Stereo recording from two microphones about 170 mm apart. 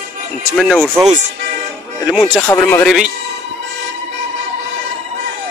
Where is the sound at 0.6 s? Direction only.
Centre (ahead or behind).